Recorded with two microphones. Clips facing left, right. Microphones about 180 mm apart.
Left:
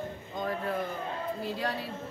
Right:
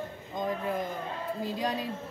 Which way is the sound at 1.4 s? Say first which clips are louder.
Right 2 dB; 15° right (ahead or behind).